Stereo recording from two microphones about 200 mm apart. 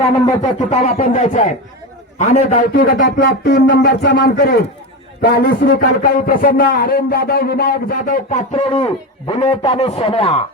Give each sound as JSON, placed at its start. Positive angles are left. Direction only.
{"t": 0.3, "sound": "a man's voice", "side_deg": 35}
{"t": 8.5, "sound": "a man's voice", "side_deg": 25}